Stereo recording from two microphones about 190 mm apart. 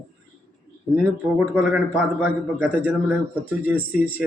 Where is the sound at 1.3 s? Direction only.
5° right (ahead or behind).